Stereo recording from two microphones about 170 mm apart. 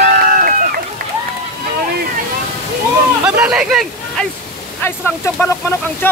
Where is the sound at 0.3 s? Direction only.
55° right (ahead or behind).